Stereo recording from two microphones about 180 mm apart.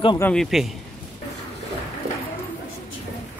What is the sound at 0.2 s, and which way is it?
Speech, 5° left (ahead or behind).